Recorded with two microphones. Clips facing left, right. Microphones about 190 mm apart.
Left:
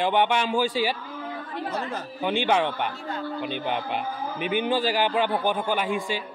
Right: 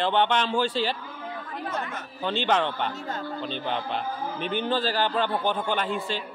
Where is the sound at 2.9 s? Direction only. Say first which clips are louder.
Left 1 dB; 45° right (ahead or behind).